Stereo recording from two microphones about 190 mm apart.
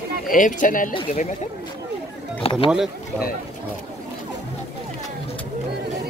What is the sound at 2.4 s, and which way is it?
Speech, 30° left (ahead or behind).